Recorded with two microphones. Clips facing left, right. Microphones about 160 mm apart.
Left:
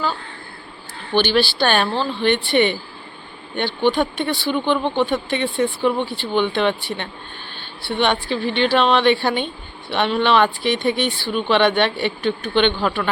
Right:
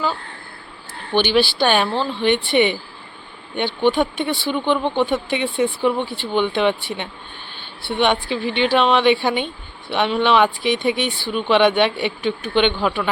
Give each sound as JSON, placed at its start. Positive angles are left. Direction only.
{"t": 1.1, "sound": "speech", "side_deg": -15}
{"t": 3.8, "sound": "speech", "side_deg": -15}
{"t": 7.9, "sound": "speech", "side_deg": -15}